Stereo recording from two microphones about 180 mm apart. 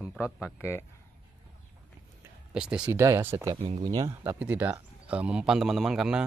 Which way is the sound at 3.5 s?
35° right (ahead or behind).